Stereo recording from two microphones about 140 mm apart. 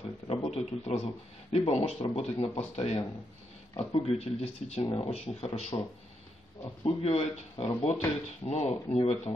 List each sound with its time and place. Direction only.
0.0 s a sound: 40° left (ahead or behind)
1.7 s speech: 50° left (ahead or behind)
6.8 s speech: 45° left (ahead or behind)